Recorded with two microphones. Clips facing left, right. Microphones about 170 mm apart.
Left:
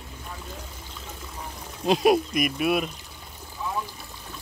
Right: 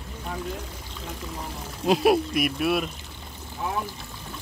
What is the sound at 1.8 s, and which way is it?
Speech, 5° right (ahead or behind).